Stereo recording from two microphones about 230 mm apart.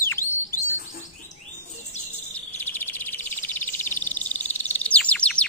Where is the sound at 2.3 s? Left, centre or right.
Centre.